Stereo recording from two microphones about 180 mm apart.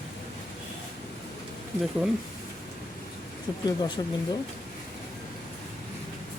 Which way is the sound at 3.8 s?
20° left (ahead or behind).